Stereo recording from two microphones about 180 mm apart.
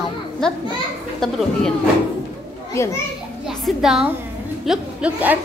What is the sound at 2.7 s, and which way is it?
Speech, 15° left (ahead or behind).